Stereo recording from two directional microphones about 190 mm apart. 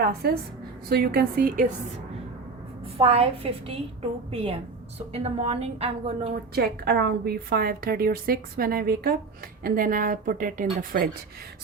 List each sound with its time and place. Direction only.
0.0 s a woman's voice: 55° right (ahead or behind)
3.0 s a woman's voice: 30° right (ahead or behind)
6.5 s a woman's voice: 55° right (ahead or behind)